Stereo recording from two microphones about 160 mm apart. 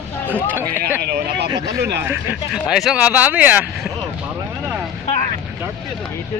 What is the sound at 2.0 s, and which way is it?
Speech, 10° right (ahead or behind).